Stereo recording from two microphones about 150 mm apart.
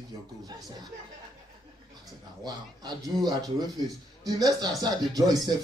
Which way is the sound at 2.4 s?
25° right (ahead or behind).